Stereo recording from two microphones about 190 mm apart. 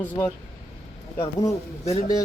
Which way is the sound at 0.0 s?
10° left (ahead or behind).